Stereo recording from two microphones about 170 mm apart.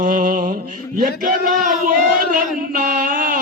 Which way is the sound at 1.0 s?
55° right (ahead or behind).